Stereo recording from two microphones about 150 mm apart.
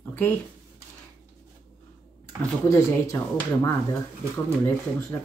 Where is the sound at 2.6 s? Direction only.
20° left (ahead or behind).